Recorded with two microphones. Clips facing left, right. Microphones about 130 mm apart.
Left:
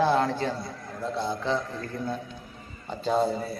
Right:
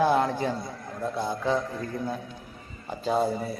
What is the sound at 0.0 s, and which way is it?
A man's voice, 15° right (ahead or behind).